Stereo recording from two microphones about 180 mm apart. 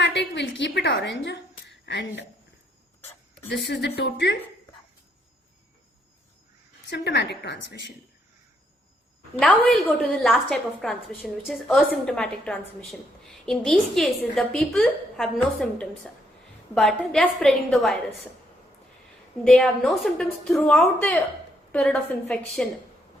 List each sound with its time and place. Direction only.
0.0 s a woman's voice: 75° left (ahead or behind)
3.7 s a woman's voice: 70° left (ahead or behind)
6.8 s a woman's voice: 70° left (ahead or behind)
9.4 s a woman's voice: centre (ahead or behind)
19.5 s a woman's voice: 5° left (ahead or behind)